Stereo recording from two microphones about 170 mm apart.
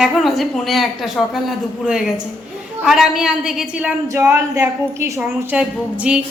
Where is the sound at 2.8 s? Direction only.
5° right (ahead or behind).